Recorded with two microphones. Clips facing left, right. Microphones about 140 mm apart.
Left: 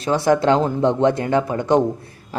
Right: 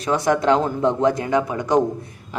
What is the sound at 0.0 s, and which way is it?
Speech, 30° left (ahead or behind).